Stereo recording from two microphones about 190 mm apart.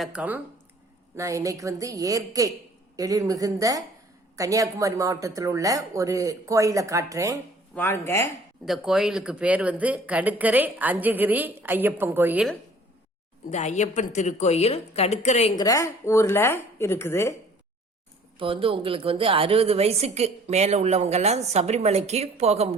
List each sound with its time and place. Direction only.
0.0 s speech: 5° right (ahead or behind)
7.8 s speech: 10° left (ahead or behind)
8.6 s speech: centre (ahead or behind)
13.5 s a woman's voice: 35° left (ahead or behind)
15.5 s speech: 15° left (ahead or behind)
18.3 s a woman's voice: 30° right (ahead or behind)